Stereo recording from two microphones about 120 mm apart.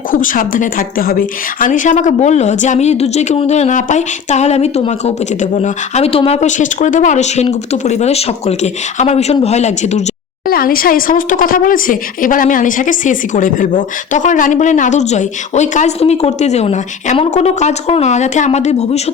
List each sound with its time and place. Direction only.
0.2 s a woman's voice: 90° left; by 10.0 s 70° left (ahead or behind)
11.1 s a woman's voice: 90° left; by 19.0 s 70° left (ahead or behind)